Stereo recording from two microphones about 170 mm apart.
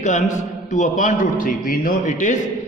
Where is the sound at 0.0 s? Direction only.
45° left (ahead or behind).